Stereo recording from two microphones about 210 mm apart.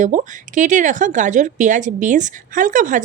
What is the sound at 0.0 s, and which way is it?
A woman's voice, 35° right (ahead or behind).